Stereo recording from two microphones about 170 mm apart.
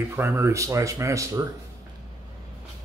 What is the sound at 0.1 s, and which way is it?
Speech, 15° right (ahead or behind).